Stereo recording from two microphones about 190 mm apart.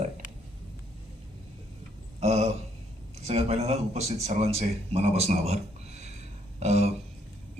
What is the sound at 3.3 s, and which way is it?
Speech, 35° right (ahead or behind).